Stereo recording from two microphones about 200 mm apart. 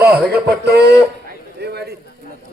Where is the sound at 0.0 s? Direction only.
55° right (ahead or behind).